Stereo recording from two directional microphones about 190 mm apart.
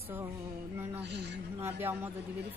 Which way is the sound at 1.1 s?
65° right (ahead or behind).